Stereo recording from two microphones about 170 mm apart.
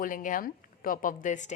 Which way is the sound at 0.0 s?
50° left (ahead or behind).